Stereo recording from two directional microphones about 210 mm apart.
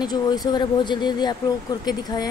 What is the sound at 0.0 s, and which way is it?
Speech, 20° left (ahead or behind).